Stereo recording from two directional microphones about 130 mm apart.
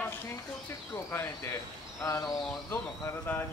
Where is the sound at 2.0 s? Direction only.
25° left (ahead or behind).